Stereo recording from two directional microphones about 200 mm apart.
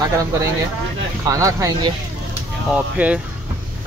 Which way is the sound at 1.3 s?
15° right (ahead or behind).